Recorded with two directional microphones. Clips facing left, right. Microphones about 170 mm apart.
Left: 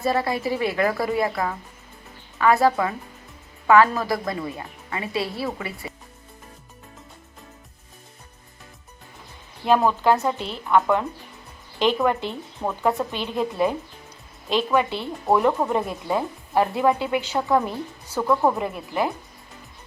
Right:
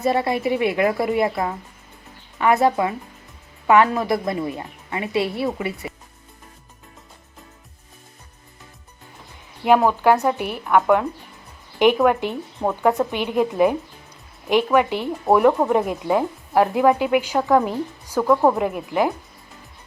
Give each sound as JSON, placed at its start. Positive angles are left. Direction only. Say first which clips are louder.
{"t": 0.0, "sound": "a woman's voice", "louder": "right 3 dB", "side_deg": -25}
{"t": 9.6, "sound": "speech", "louder": "right 3 dB", "side_deg": -15}